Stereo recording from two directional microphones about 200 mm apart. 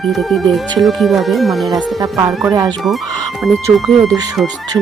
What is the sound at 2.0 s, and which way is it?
Speech, 15° right (ahead or behind).